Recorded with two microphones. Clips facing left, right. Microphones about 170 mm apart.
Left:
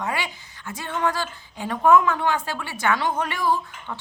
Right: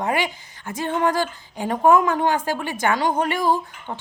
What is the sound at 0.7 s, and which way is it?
Speech, 45° right (ahead or behind).